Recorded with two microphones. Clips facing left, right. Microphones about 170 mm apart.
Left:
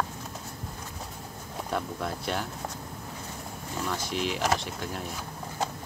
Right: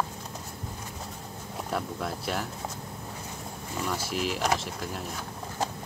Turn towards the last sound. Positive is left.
turn(degrees=0)  # may be behind; listen again after turning